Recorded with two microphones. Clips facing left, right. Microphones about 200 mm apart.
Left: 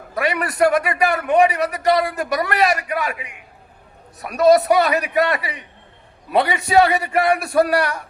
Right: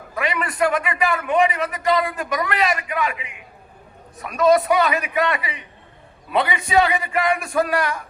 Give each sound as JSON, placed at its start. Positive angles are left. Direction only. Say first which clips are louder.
{"t": 0.1, "sound": "a man's voice", "louder": "left 3 dB", "side_deg": 40}
{"t": 4.3, "sound": "a man's voice", "louder": "left 3 dB", "side_deg": 40}